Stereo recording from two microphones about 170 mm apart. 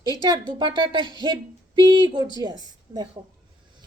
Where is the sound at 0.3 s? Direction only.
25° right (ahead or behind).